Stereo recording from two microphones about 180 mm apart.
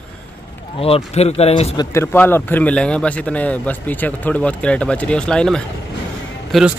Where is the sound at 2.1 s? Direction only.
10° left (ahead or behind).